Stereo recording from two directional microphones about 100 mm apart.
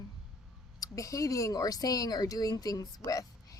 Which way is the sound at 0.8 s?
35° left (ahead or behind).